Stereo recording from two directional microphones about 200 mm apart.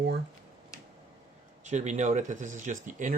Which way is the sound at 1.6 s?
35° right (ahead or behind).